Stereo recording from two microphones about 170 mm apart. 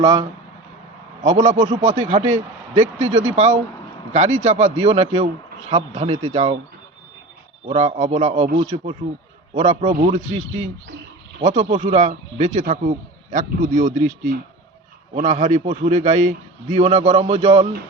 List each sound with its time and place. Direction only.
0.0 s speech: 30° right (ahead or behind)
1.2 s a man's voice: 40° right (ahead or behind)
7.7 s a man's voice: 35° right (ahead or behind)